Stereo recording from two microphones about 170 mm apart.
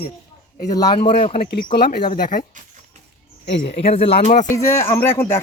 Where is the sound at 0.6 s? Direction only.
25° left (ahead or behind).